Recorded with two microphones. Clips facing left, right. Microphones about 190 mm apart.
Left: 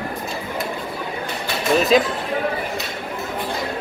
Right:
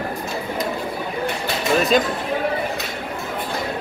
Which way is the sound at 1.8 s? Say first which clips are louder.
Left 2 dB; centre (ahead or behind).